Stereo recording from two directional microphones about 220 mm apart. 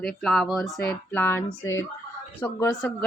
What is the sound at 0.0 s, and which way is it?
Speech, centre (ahead or behind).